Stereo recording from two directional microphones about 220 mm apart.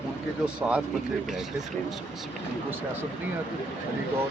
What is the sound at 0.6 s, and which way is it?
Speech, 5° right (ahead or behind).